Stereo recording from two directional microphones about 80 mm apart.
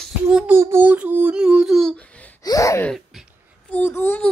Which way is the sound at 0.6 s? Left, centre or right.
Right.